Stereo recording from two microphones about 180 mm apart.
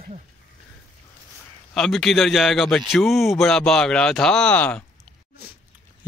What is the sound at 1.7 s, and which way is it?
Speech, centre (ahead or behind).